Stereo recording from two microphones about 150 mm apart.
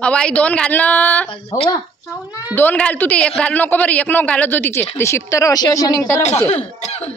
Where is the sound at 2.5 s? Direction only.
10° left (ahead or behind).